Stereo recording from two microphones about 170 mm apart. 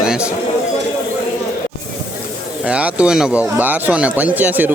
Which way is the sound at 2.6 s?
5° right (ahead or behind).